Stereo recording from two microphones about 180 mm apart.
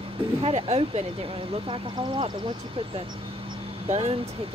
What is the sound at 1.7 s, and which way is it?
Speech, 25° right (ahead or behind).